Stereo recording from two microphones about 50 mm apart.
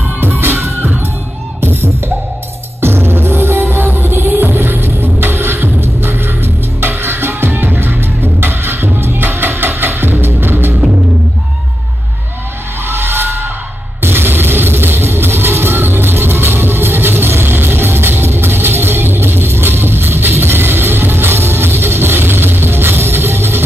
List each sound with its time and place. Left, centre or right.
0.2 s music: right
1.6 s beatboxing: right
2.8 s music: right
12.8 s a sound: right
14.0 s music: right